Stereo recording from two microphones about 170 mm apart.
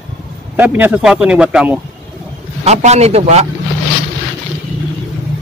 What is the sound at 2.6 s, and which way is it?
Speech, 40° right (ahead or behind).